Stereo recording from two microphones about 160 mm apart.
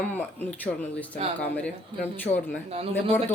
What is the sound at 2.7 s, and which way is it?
Speech, 40° right (ahead or behind).